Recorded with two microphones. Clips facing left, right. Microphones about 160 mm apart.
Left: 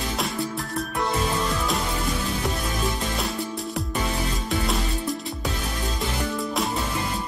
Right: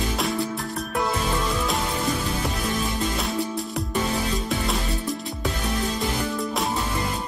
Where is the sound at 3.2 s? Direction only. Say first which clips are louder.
Right 2 dB; centre (ahead or behind).